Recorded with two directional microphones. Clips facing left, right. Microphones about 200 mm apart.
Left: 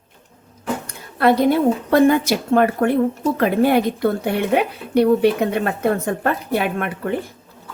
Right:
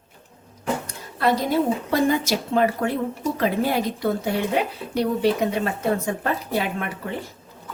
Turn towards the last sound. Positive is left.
turn(degrees=60)  # may be behind; listen again after turning